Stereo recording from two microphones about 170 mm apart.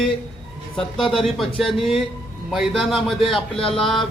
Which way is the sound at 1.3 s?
Centre (ahead or behind).